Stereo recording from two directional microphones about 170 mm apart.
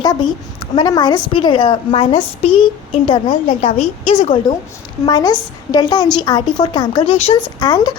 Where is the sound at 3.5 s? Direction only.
45° left (ahead or behind).